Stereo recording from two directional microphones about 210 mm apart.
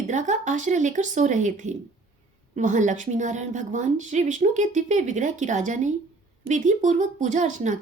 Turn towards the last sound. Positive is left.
turn(degrees=-35)  # may be behind; listen again after turning